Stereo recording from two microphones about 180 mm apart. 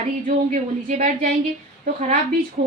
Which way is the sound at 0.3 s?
45° right (ahead or behind).